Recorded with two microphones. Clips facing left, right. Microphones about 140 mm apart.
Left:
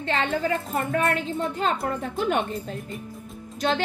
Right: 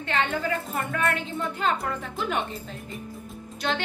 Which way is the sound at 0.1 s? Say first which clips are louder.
Left 2 dB; 30° left (ahead or behind).